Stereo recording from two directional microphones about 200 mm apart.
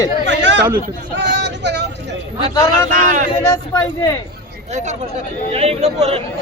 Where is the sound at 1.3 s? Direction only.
60° right (ahead or behind).